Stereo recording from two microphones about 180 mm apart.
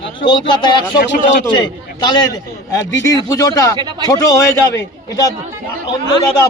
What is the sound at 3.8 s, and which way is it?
Speech, 25° right (ahead or behind).